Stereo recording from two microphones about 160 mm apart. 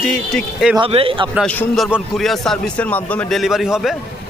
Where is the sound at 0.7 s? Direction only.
35° right (ahead or behind).